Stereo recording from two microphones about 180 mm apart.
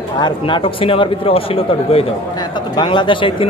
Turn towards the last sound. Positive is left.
turn(degrees=30)  # may be behind; listen again after turning